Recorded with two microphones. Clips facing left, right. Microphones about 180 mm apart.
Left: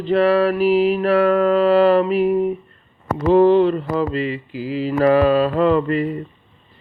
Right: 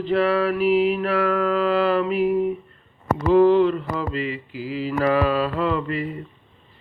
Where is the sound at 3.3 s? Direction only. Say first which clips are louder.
Left 2 dB; 30° left (ahead or behind).